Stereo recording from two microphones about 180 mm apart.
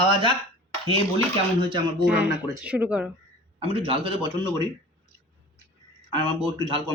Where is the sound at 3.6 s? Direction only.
30° right (ahead or behind).